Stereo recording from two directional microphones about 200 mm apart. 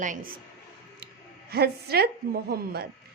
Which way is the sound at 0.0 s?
45° right (ahead or behind).